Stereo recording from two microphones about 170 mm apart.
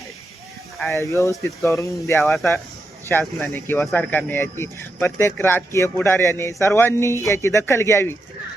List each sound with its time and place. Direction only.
0.9 s speech: 15° left (ahead or behind)
2.2 s speech: centre (ahead or behind)
3.1 s speech: 10° left (ahead or behind)